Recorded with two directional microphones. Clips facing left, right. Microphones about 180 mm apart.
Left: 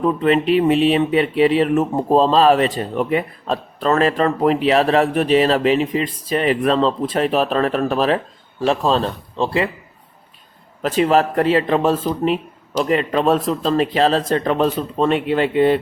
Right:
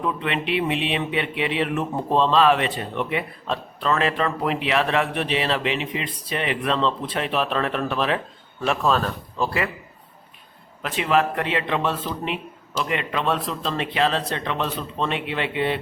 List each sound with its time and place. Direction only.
0.0 s speech: 40° left (ahead or behind)
10.8 s speech: 40° left (ahead or behind)